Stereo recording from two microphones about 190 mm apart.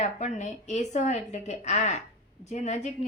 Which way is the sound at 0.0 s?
40° left (ahead or behind).